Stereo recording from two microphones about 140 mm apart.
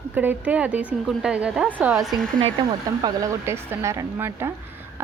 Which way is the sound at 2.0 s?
Centre (ahead or behind).